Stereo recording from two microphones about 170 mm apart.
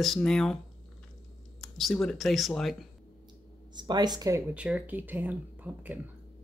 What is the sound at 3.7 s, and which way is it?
Speech, 25° right (ahead or behind).